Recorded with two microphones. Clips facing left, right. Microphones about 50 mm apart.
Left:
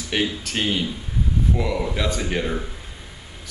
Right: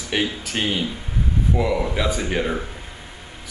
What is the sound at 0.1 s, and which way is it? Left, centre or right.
Speech, centre.